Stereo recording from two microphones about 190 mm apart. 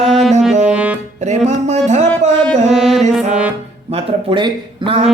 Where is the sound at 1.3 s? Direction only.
35° right (ahead or behind).